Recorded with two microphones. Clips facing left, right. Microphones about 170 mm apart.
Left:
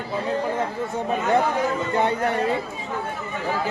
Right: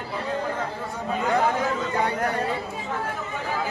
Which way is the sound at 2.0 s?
25° left (ahead or behind).